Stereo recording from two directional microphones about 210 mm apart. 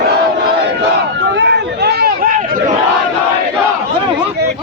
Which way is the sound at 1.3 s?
55° right (ahead or behind).